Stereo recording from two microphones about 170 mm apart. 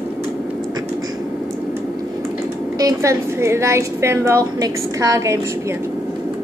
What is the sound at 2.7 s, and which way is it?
A woman's voice, 20° right (ahead or behind).